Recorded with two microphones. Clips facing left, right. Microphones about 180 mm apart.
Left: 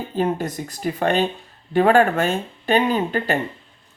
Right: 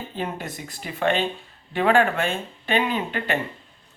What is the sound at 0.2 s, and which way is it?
Speech, 40° left (ahead or behind).